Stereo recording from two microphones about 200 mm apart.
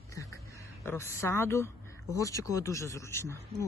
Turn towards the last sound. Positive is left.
turn(degrees=15)  # may be behind; listen again after turning